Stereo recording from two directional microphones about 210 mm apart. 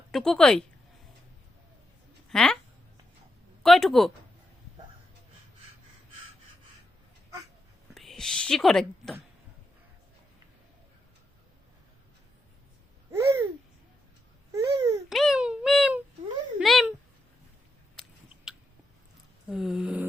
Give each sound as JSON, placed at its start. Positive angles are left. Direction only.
{"t": 0.1, "sound": "a child's voice", "side_deg": 0}
{"t": 2.3, "sound": "a child's voice", "side_deg": 5}
{"t": 3.6, "sound": "a child's voice", "side_deg": 0}
{"t": 7.9, "sound": "a woman's voice", "side_deg": 0}
{"t": 13.1, "sound": "babbling", "side_deg": -15}
{"t": 14.5, "sound": "babbling", "side_deg": -15}
{"t": 15.1, "sound": "a child's voice", "side_deg": 0}
{"t": 18.5, "sound": "biting", "side_deg": 0}
{"t": 19.5, "sound": "a child's voice", "side_deg": -5}